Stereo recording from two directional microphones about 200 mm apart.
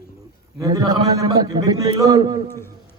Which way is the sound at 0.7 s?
20° right (ahead or behind).